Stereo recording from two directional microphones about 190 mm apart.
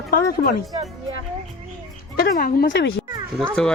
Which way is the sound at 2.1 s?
50° left (ahead or behind).